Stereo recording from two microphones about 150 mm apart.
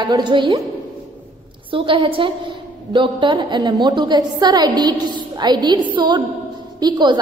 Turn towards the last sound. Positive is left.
turn(degrees=-30)  # may be behind; listen again after turning